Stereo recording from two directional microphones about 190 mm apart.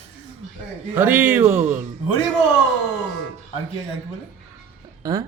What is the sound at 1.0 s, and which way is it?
Speech, 10° right (ahead or behind).